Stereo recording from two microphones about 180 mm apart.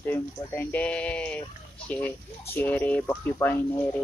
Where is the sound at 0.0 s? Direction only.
10° left (ahead or behind).